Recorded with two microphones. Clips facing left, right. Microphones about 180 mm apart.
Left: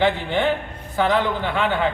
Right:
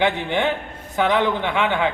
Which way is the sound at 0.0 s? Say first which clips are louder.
Left 1 dB; 15° right (ahead or behind).